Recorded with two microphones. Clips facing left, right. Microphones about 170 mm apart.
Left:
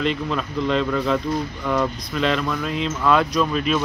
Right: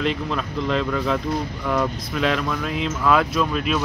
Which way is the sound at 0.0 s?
Centre (ahead or behind).